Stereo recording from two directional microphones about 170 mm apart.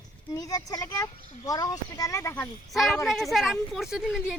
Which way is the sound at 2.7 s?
Centre (ahead or behind).